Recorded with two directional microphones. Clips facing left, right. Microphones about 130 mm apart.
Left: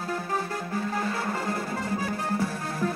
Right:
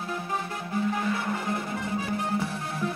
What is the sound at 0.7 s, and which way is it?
Music, 35° left (ahead or behind).